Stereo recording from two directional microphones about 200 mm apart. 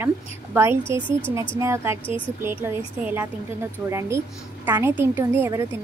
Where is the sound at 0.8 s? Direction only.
25° left (ahead or behind).